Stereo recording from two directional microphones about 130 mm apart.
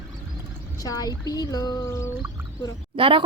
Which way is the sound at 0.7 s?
30° left (ahead or behind).